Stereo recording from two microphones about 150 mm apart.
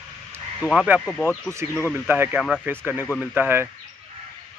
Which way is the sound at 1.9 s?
10° right (ahead or behind).